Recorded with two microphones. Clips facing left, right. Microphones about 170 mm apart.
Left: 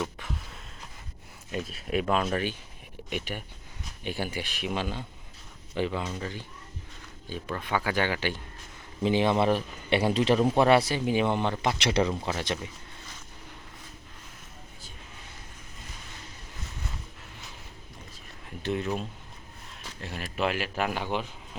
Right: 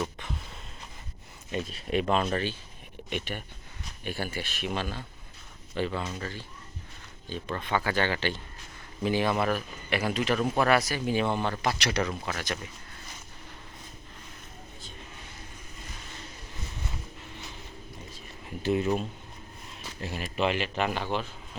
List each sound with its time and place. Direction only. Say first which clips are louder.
0.0 s a sound: even; 5° left (ahead or behind)
1.5 s a man's voice: right 1 dB; 5° left (ahead or behind)
9.0 s a man's voice: left 3 dB; 20° left (ahead or behind)
11.0 s a man's voice: left 2 dB; 15° left (ahead or behind)
18.6 s a man's voice: right 4 dB; centre (ahead or behind)